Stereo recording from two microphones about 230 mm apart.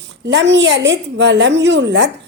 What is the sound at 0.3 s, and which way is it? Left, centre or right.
A woman's voice, right.